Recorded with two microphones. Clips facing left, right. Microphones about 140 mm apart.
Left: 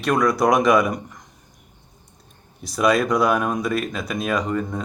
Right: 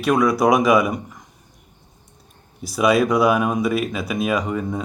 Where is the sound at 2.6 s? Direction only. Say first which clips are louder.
Right 2 dB; 5° right (ahead or behind).